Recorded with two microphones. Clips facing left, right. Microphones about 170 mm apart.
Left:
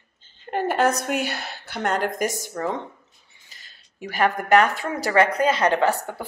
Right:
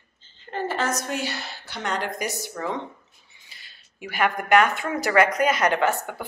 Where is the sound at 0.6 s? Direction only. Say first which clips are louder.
Left 5 dB; 55° left (ahead or behind).